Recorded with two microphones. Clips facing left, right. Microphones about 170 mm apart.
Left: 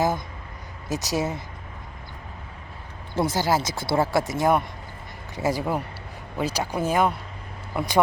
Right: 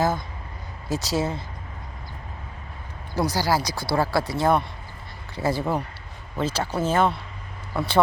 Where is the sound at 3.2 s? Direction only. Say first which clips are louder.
Even; 25° left (ahead or behind).